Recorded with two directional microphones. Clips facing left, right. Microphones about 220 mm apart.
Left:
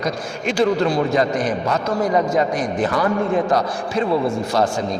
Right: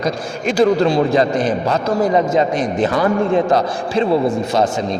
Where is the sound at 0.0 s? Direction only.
40° right (ahead or behind).